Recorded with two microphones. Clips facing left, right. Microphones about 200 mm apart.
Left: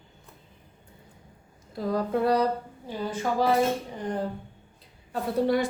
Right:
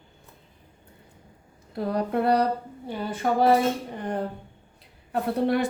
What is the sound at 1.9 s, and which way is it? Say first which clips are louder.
A woman's voice: right 1 dB; 65° right (ahead or behind).